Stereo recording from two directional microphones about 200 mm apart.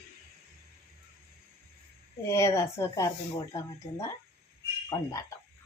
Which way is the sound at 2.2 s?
15° left (ahead or behind).